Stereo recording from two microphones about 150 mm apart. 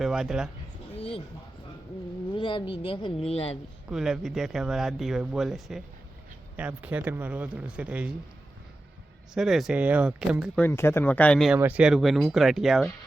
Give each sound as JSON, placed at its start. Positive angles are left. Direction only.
{"t": 0.0, "sound": "speech", "side_deg": -5}
{"t": 0.9, "sound": "a sound", "side_deg": 40}
{"t": 2.3, "sound": "speech", "side_deg": 35}
{"t": 3.8, "sound": "speech", "side_deg": -5}
{"t": 9.3, "sound": "speech", "side_deg": -5}
{"t": 10.5, "sound": "speech", "side_deg": 15}
{"t": 11.5, "sound": "speech", "side_deg": -10}